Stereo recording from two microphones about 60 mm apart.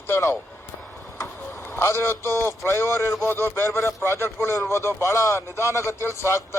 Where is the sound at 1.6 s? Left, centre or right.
Left.